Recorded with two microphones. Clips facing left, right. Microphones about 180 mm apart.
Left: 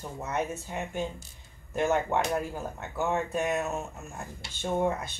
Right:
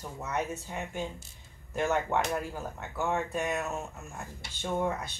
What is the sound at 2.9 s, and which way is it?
Speech, 15° left (ahead or behind).